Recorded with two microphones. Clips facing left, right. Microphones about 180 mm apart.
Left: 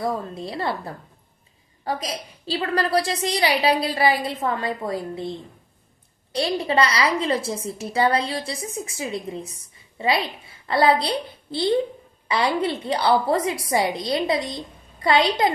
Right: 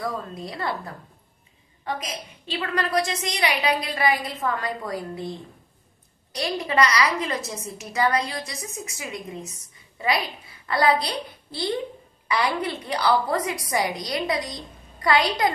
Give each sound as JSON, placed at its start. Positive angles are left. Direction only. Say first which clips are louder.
{"t": 0.0, "sound": "a woman's voice", "louder": "left 4 dB", "side_deg": 25}
{"t": 6.3, "sound": "a woman's voice", "louder": "left 3 dB", "side_deg": 30}